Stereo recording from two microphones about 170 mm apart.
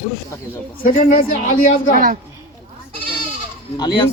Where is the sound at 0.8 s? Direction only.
60° left (ahead or behind).